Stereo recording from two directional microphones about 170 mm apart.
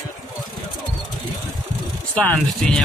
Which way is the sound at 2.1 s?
10° left (ahead or behind).